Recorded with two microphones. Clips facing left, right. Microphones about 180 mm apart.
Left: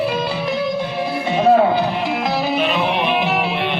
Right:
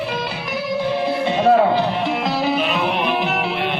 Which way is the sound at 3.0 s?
20° left (ahead or behind).